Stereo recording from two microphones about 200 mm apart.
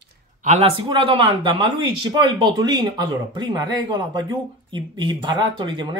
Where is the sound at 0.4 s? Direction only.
35° right (ahead or behind).